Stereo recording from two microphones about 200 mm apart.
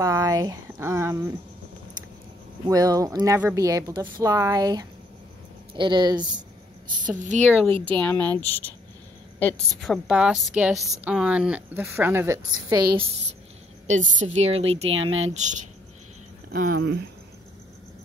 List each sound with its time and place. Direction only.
0.0 s speech: 15° right (ahead or behind)
2.7 s speech: 20° right (ahead or behind)
7.1 s a woman's voice: 40° right (ahead or behind)
8.0 s speech: 10° left (ahead or behind)
10.0 s a woman's voice: 5° right (ahead or behind); by 13.1 s 25° right (ahead or behind)
13.8 s a woman's voice: 35° right (ahead or behind)
14.9 s speech: 80° right
16.5 s speech: 45° right (ahead or behind)